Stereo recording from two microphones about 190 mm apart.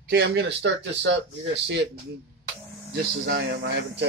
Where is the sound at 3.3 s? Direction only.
65° right (ahead or behind).